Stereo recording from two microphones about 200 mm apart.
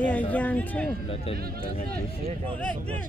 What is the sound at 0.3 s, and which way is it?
Speech, 5° left (ahead or behind).